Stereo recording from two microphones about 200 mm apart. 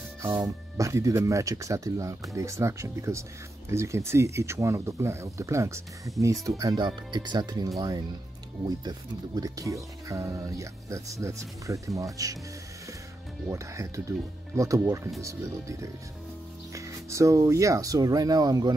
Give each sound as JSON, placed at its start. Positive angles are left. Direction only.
{"t": 0.2, "sound": "speech", "side_deg": -15}
{"t": 13.5, "sound": "speech", "side_deg": -15}
{"t": 16.7, "sound": "speech", "side_deg": -15}